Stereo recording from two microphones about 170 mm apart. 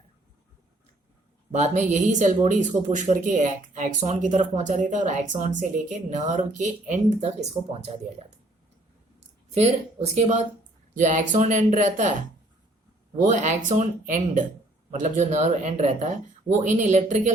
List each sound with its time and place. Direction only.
1.5 s a woman's voice: 40° right (ahead or behind)
9.6 s a woman's voice: 40° right (ahead or behind)
13.2 s a woman's voice: 45° right (ahead or behind)